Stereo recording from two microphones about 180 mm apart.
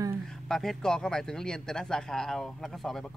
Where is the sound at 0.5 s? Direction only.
5° left (ahead or behind).